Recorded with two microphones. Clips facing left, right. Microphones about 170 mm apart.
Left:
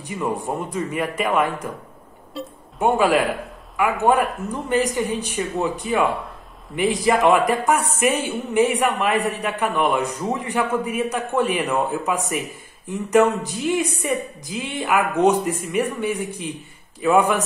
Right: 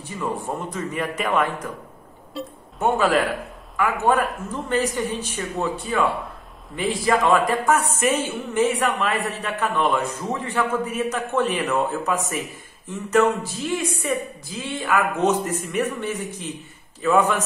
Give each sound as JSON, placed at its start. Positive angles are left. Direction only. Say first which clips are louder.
{"t": 0.2, "sound": "a woman's voice", "louder": "left 2 dB", "side_deg": 15}
{"t": 2.8, "sound": "a woman's voice", "louder": "left 2 dB", "side_deg": 10}